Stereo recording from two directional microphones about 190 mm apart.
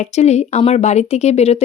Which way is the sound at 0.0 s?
35° left (ahead or behind).